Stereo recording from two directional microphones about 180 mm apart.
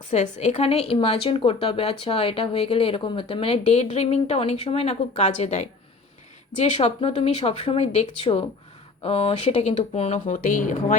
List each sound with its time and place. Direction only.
0.1 s speech: 40° left (ahead or behind)